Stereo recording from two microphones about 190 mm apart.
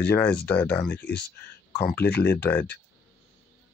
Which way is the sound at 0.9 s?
60° left (ahead or behind).